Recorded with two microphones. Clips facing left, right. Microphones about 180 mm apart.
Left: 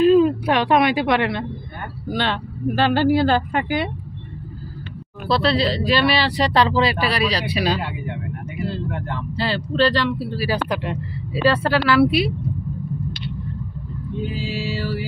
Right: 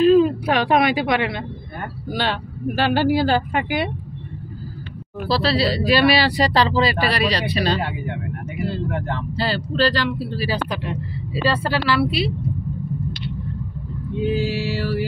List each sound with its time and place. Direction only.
0.0 s speech: centre (ahead or behind)
5.3 s speech: 5° right (ahead or behind)
9.4 s speech: centre (ahead or behind)
11.4 s speech: centre (ahead or behind)
14.4 s mantra: 75° right (ahead or behind)